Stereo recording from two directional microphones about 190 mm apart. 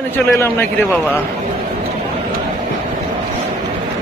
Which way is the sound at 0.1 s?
10° left (ahead or behind).